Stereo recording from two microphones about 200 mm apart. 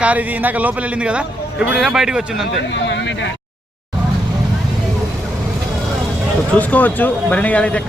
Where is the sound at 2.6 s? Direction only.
65° left (ahead or behind).